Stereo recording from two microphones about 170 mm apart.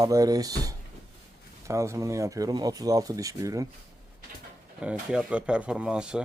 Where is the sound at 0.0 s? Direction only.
20° right (ahead or behind).